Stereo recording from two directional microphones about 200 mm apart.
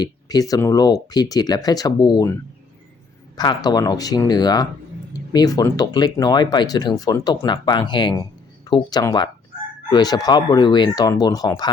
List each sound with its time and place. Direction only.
0.0 s speech: 20° left (ahead or behind)